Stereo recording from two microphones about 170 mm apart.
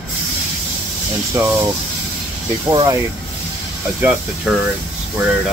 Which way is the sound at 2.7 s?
20° right (ahead or behind).